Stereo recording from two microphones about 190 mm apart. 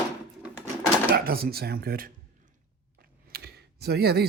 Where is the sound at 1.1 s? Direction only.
55° right (ahead or behind).